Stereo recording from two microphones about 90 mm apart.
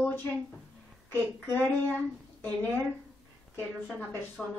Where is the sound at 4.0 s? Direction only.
25° left (ahead or behind).